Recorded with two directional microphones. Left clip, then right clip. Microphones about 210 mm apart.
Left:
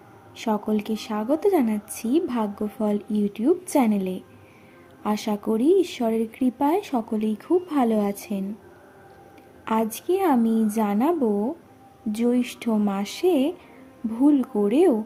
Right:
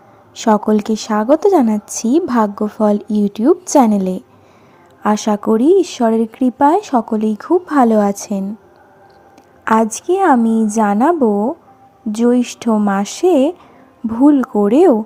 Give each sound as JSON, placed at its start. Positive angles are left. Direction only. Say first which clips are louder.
{"t": 0.3, "sound": "speech", "louder": "right 12 dB", "side_deg": -30}
{"t": 9.6, "sound": "speech", "louder": "right 10 dB", "side_deg": -25}